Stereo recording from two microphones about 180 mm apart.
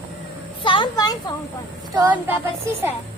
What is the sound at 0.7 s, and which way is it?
Speech, 25° left (ahead or behind).